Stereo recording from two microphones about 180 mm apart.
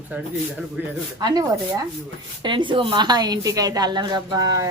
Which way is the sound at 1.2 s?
20° right (ahead or behind).